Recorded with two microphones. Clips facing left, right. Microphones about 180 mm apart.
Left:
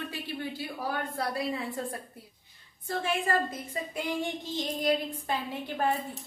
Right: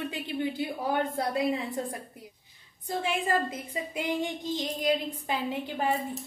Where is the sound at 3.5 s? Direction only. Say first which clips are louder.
Right 1 dB; 15° right (ahead or behind).